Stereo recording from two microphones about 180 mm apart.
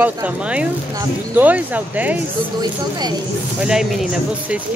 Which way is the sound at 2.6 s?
20° right (ahead or behind).